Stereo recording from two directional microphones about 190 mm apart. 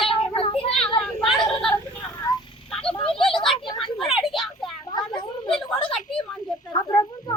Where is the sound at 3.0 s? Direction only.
30° left (ahead or behind).